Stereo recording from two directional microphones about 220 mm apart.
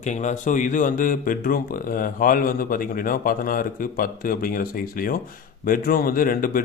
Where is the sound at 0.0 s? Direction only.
35° left (ahead or behind).